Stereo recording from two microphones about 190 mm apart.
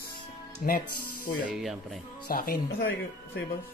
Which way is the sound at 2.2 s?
50° left (ahead or behind).